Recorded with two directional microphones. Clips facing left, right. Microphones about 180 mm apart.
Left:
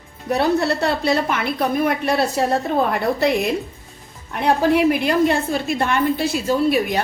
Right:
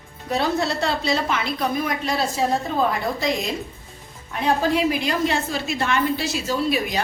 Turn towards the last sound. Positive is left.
turn(degrees=55)  # may be behind; listen again after turning